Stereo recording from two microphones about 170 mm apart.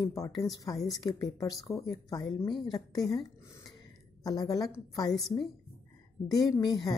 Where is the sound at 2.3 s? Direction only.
30° left (ahead or behind).